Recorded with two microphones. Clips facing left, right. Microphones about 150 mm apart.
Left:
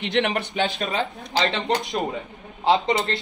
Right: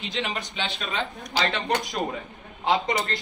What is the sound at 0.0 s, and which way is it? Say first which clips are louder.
Speech: left 8 dB; 75° left (ahead or behind).